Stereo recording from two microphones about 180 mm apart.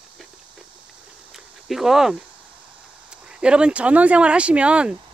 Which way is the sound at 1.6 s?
Centre (ahead or behind).